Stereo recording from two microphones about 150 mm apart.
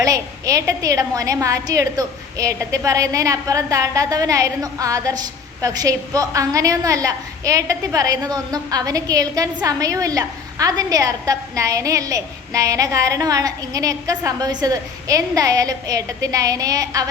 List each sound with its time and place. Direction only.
0.0 s a woman's voice: 20° right (ahead or behind)